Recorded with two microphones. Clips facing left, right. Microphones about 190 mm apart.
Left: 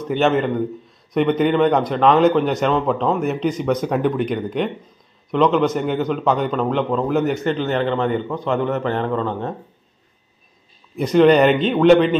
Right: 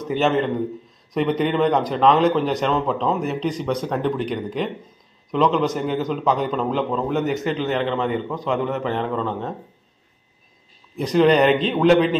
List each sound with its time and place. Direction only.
0.1 s a man's voice: centre (ahead or behind)
3.3 s a man's voice: 35° right (ahead or behind)
3.8 s a man's voice: 5° left (ahead or behind)
11.0 s a man's voice: centre (ahead or behind)